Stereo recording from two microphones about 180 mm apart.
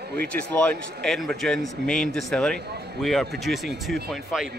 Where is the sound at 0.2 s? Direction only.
10° left (ahead or behind).